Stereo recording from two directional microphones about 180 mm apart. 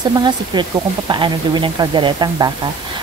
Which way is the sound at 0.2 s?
25° right (ahead or behind).